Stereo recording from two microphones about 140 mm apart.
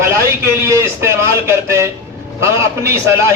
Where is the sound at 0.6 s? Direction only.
20° right (ahead or behind).